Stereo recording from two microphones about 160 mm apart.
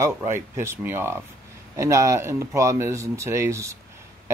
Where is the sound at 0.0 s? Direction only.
15° right (ahead or behind).